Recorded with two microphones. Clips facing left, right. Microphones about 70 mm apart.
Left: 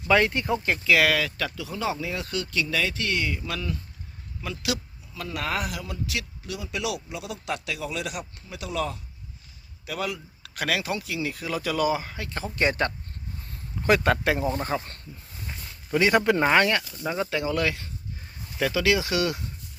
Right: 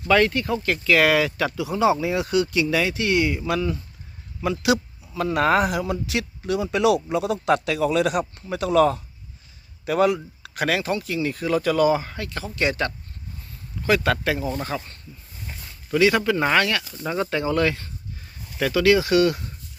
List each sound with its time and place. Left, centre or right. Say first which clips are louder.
0.1 s speech: right 3 dB; centre
0.9 s speech: right 3 dB; centre
1.1 s speech: right 6 dB; centre; by 5.6 s right
5.6 s speech: right 9 dB; right
6.5 s speech: right 11 dB; right
9.8 s speech: right 12 dB; right
10.4 s speech: right 3 dB; centre
12.2 s speech: right 1 dB; left
14.5 s speech: even; centre
16.0 s speech: right 2 dB; left
16.5 s speech: right 1 dB; left
17.0 s speech: right 3 dB; centre